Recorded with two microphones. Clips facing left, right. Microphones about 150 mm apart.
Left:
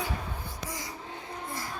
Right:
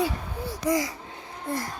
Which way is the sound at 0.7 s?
90° right.